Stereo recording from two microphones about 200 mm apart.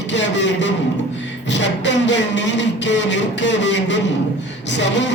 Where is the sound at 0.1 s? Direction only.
65° left (ahead or behind).